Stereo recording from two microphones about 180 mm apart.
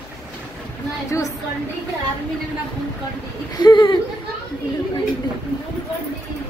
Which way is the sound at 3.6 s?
25° left (ahead or behind).